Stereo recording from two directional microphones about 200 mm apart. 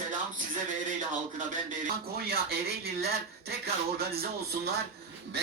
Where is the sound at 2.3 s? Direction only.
50° right (ahead or behind).